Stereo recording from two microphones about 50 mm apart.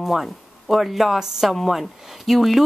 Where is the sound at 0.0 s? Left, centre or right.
Centre.